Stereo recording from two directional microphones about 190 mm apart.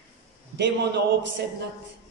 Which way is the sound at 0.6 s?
65° right (ahead or behind).